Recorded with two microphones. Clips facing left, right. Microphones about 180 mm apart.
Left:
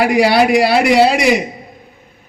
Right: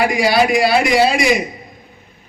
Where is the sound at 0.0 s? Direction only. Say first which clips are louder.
Left 3 dB; 65° left (ahead or behind).